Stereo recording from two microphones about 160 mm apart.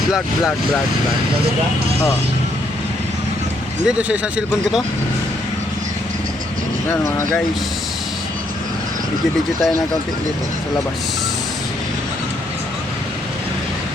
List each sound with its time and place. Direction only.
3.8 s a man's voice: 5° right (ahead or behind)
6.8 s speech: 15° left (ahead or behind)